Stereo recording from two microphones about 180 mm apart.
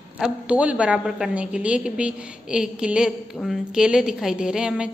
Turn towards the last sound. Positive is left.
turn(degrees=-5)  # may be behind; listen again after turning